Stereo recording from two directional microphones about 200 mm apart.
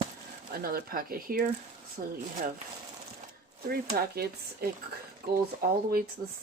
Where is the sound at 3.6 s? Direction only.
50° right (ahead or behind).